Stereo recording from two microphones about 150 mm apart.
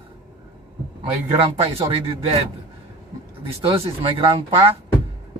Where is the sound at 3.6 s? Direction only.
35° right (ahead or behind).